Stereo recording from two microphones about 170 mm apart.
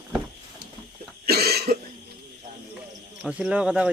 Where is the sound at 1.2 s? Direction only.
70° right (ahead or behind).